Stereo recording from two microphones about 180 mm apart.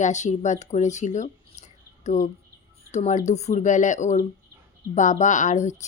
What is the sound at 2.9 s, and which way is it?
A woman's voice, 40° left (ahead or behind).